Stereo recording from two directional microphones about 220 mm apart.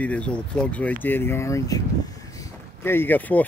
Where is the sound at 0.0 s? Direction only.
5° left (ahead or behind).